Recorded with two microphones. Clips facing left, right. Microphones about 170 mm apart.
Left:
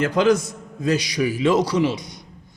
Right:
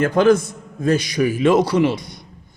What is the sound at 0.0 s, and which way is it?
A man's voice, 50° right (ahead or behind).